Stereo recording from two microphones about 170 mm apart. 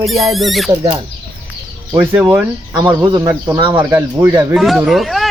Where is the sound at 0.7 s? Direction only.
25° right (ahead or behind).